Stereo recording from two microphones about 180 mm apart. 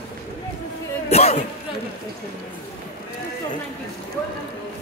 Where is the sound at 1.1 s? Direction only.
35° left (ahead or behind).